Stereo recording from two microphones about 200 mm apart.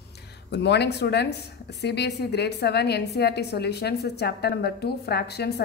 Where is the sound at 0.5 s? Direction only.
60° left (ahead or behind).